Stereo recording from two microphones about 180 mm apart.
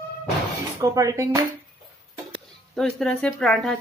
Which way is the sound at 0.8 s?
20° right (ahead or behind).